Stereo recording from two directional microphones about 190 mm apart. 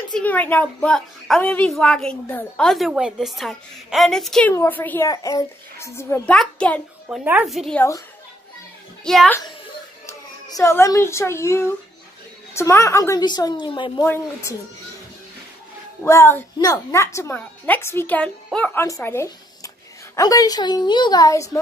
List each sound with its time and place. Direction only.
0.1 s a woman's voice: 10° left (ahead or behind)
9.0 s a woman's voice: centre (ahead or behind)
10.0 s a woman's voice: 15° left (ahead or behind)
14.0 s a woman's voice: 10° left (ahead or behind)
16.0 s a woman's voice: 15° left (ahead or behind)